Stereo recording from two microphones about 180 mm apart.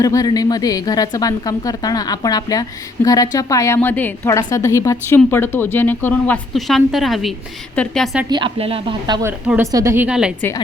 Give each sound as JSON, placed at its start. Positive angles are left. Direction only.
{"t": 0.0, "sound": "a woman's voice", "side_deg": 20}
{"t": 8.3, "sound": "a woman's voice", "side_deg": -30}